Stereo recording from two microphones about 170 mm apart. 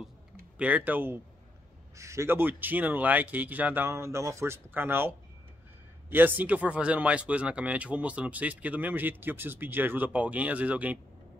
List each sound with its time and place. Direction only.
0.6 s speech: 10° right (ahead or behind)